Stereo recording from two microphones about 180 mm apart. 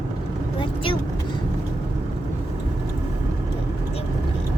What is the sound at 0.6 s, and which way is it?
Vehicle, 30° left (ahead or behind).